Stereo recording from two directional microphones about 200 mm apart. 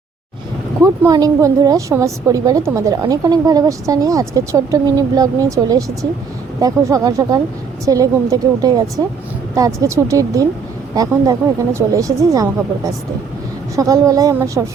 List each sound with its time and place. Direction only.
0.8 s a woman's voice: 15° right (ahead or behind)